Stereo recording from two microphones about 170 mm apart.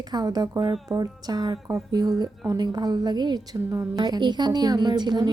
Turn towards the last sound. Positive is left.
turn(degrees=-25)  # may be behind; listen again after turning